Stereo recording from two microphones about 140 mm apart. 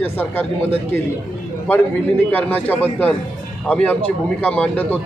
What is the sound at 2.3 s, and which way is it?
A man's voice, 10° left (ahead or behind).